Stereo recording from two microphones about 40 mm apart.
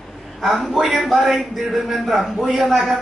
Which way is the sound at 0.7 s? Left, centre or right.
Centre.